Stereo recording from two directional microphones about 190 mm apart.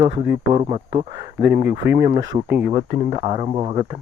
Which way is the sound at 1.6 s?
65° right (ahead or behind).